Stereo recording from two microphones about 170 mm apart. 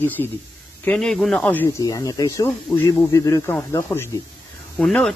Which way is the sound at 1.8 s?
20° left (ahead or behind).